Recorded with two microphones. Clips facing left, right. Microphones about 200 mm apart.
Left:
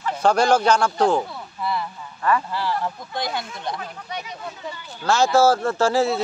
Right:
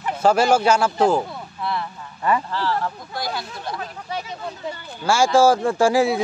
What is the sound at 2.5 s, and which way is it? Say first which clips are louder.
Speech: right 1 dB; 15° left (ahead or behind).